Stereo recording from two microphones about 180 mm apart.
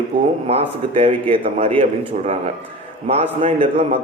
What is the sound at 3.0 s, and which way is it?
Speech, 35° right (ahead or behind).